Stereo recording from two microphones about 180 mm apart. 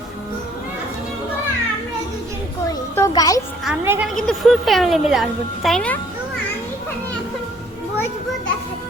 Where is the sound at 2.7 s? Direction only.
20° left (ahead or behind).